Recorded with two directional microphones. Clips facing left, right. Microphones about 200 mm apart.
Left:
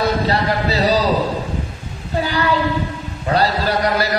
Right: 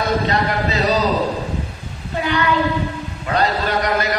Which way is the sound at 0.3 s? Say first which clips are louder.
Left 1 dB; 35° left (ahead or behind).